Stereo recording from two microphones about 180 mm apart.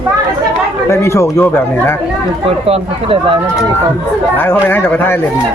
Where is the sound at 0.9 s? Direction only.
15° left (ahead or behind).